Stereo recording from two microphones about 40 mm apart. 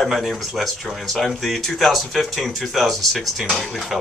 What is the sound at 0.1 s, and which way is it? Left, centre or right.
Speech, centre.